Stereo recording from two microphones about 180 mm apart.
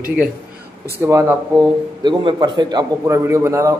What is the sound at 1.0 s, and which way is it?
Speech, 15° right (ahead or behind).